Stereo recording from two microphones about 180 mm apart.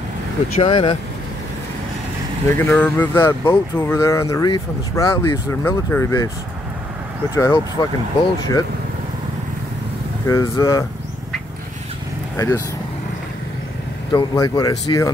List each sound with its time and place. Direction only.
0.6 s speech: 30° left (ahead or behind)
2.4 s speech: 15° left (ahead or behind)
7.3 s speech: 20° left (ahead or behind)
10.2 s speech: 15° left (ahead or behind)
12.4 s speech: 15° left (ahead or behind)
14.1 s speech: 20° left (ahead or behind)